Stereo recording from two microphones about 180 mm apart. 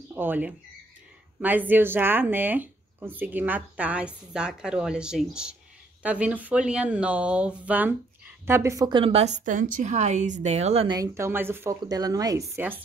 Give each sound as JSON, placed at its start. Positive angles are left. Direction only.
{"t": 0.1, "sound": "a woman's voice", "side_deg": -10}
{"t": 11.0, "sound": "speech", "side_deg": -15}